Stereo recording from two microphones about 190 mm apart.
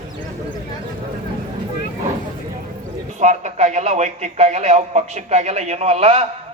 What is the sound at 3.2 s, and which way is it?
A man's voice, 40° right (ahead or behind).